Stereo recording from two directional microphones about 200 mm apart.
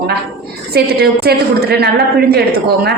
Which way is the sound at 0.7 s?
50° right (ahead or behind).